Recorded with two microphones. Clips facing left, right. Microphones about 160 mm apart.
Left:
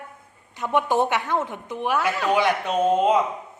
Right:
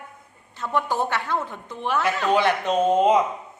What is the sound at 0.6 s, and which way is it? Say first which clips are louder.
A woman's voice: left 3 dB; 20° left (ahead or behind).